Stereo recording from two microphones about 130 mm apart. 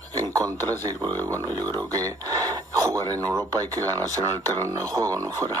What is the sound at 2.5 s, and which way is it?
Radio, 30° right (ahead or behind).